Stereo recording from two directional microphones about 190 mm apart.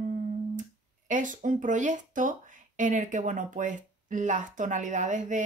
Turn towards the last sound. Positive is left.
turn(degrees=-40)  # may be behind; listen again after turning